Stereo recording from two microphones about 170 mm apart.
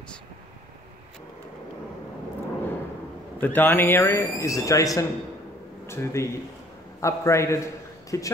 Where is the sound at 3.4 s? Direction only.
10° left (ahead or behind).